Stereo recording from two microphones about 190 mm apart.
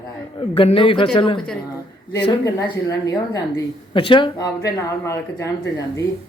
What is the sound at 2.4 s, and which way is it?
A woman's voice, 20° left (ahead or behind).